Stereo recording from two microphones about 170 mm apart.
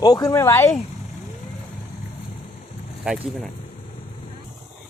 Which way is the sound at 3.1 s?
5° right (ahead or behind).